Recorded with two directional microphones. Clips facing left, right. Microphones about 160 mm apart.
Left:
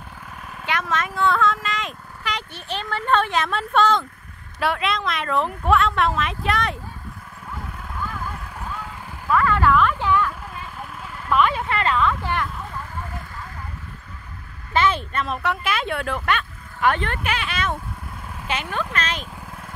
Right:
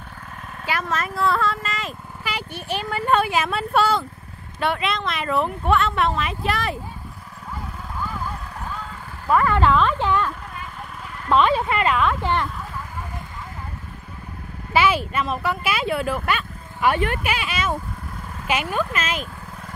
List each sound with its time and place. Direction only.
0.7 s speech: 5° right (ahead or behind)
9.3 s speech: 25° right (ahead or behind)
14.7 s speech: 10° right (ahead or behind)